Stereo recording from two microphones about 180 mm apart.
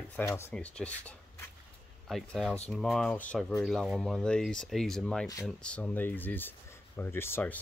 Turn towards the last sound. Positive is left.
turn(degrees=10)  # may be behind; listen again after turning